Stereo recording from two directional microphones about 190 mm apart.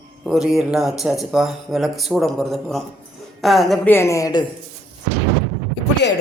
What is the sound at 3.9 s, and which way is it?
Speech, 15° left (ahead or behind).